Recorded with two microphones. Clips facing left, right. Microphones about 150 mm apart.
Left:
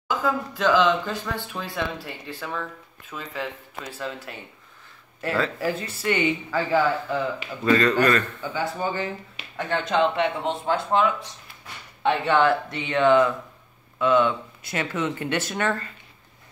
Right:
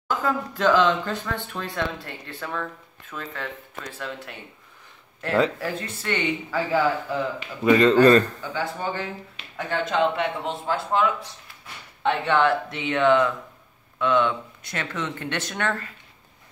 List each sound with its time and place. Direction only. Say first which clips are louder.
0.1 s speech: even; 5° left (ahead or behind)
5.6 s speech: left 3 dB; 5° left (ahead or behind)
6.5 s speech: even; 5° right (ahead or behind)
7.6 s speech: right 4 dB; 20° right (ahead or behind)
8.5 s speech: left 2 dB; 5° left (ahead or behind)